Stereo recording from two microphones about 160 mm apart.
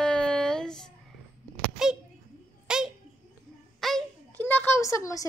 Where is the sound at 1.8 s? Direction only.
5° right (ahead or behind).